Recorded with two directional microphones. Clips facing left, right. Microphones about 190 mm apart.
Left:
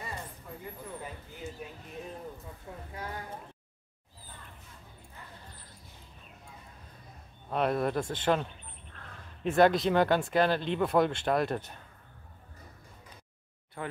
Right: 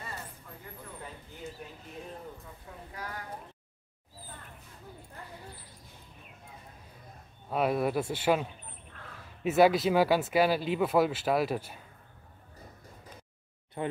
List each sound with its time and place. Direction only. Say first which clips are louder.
2.9 s speech: left 1 dB; 25° left (ahead or behind)
7.4 s speech: right 1 dB; 5° right (ahead or behind)
13.8 s speech: right 5 dB; 20° right (ahead or behind)